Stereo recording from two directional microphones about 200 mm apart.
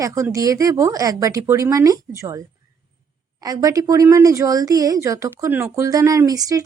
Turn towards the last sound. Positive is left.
turn(degrees=-15)  # may be behind; listen again after turning